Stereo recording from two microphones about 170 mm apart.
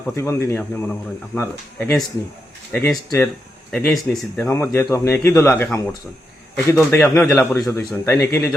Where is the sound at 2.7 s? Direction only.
10° left (ahead or behind).